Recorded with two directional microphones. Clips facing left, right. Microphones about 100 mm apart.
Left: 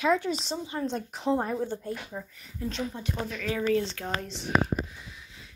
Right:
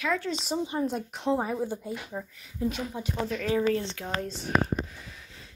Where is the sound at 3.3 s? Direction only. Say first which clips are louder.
Right 2 dB; 30° right (ahead or behind).